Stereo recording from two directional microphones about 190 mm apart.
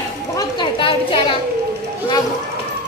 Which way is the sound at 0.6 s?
25° left (ahead or behind).